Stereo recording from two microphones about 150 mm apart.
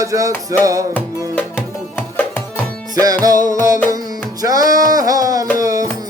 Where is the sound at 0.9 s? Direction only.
10° left (ahead or behind).